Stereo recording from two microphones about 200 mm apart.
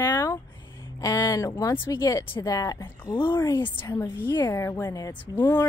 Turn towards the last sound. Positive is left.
turn(degrees=10)  # may be behind; listen again after turning